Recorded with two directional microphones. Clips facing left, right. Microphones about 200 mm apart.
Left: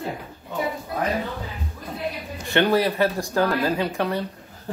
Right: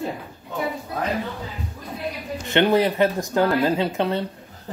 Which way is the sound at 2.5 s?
20° right (ahead or behind).